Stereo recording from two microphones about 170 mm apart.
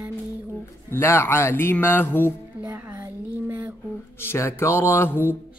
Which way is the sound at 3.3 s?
10° right (ahead or behind).